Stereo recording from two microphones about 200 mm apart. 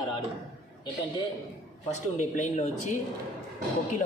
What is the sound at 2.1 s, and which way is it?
Speech, 40° left (ahead or behind).